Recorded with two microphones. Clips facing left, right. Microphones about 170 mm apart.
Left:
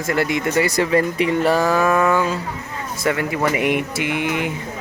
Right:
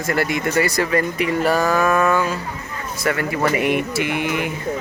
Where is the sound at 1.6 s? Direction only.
5° left (ahead or behind).